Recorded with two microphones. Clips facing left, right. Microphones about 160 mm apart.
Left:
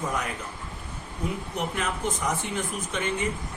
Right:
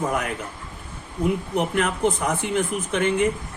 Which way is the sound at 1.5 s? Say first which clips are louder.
Right 7 dB; 60° right (ahead or behind).